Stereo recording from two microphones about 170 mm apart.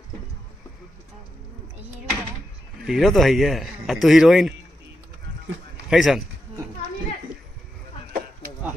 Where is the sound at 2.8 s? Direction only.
Centre (ahead or behind).